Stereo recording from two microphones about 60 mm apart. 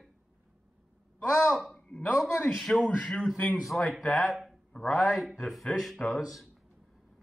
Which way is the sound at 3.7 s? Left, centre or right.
Left.